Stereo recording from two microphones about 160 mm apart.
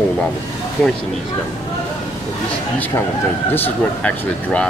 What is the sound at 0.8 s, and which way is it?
Speech, 5° left (ahead or behind).